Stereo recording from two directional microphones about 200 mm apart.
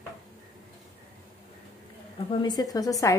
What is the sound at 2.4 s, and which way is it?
Speech, 20° left (ahead or behind).